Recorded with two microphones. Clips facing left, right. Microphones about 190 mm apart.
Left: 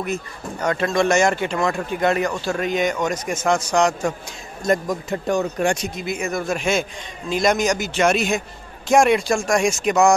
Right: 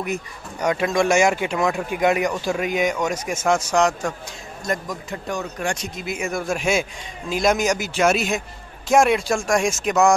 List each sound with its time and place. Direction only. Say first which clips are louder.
0.0 s speech: left 1 dB; 15° right (ahead or behind)
4.6 s speech: left 6 dB; 30° left (ahead or behind)
6.0 s speech: left 1 dB; 5° right (ahead or behind)